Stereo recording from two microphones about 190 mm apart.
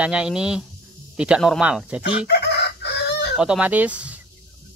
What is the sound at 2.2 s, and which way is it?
Chicken, 60° left (ahead or behind).